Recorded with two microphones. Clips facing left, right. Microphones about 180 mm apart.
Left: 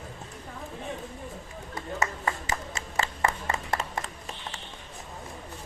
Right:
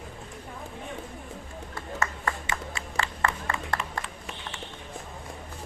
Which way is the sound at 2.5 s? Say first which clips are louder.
Even; 40° left (ahead or behind).